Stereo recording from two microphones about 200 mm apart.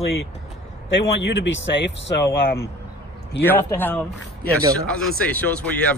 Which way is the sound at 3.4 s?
10° left (ahead or behind).